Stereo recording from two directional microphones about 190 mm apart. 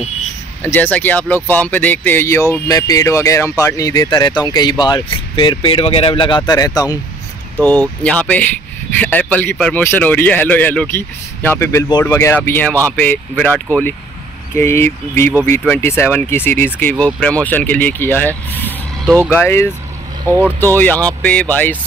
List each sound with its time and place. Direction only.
0.7 s speech: 10° left (ahead or behind)
7.6 s speech: 10° left (ahead or behind)
13.7 s speech: 15° right (ahead or behind)
14.5 s speech: 15° left (ahead or behind)
19.0 s speech: 5° right (ahead or behind)
19.3 s speech: 10° left (ahead or behind)
20.2 s speech: 10° right (ahead or behind)
20.6 s speech: 10° left (ahead or behind)